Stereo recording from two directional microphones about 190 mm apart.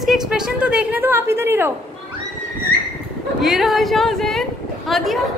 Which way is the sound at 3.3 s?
Centre (ahead or behind).